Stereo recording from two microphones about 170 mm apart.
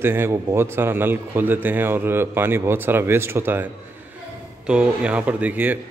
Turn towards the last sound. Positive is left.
turn(degrees=-10)  # may be behind; listen again after turning